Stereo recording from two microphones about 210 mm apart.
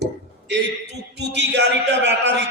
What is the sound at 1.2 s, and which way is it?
A man's voice, 55° right (ahead or behind).